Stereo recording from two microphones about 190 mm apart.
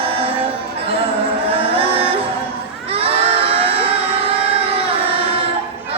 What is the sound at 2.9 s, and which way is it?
Crowd, 30° right (ahead or behind).